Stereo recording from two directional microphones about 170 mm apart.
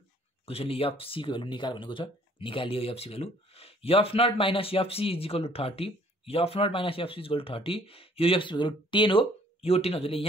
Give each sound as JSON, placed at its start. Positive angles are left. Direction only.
{"t": 0.5, "sound": "speech", "side_deg": 35}